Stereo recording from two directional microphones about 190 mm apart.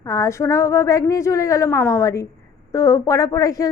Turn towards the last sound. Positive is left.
turn(degrees=20)  # may be behind; listen again after turning